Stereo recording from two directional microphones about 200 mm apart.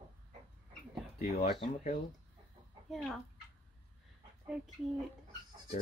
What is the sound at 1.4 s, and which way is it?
Speech, 30° left (ahead or behind).